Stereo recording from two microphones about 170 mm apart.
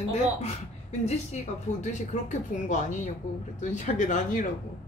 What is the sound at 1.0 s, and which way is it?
A woman's voice, 40° left (ahead or behind).